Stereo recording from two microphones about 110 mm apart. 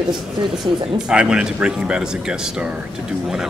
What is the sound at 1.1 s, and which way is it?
A man's voice, 10° right (ahead or behind).